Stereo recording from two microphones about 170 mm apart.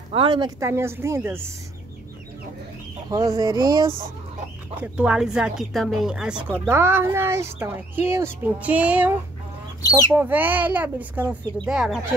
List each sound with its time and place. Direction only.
0.1 s speech: 30° right (ahead or behind)
0.6 s speech: 15° right (ahead or behind)
3.1 s speech: 20° right (ahead or behind)
4.9 s speech: 5° right (ahead or behind)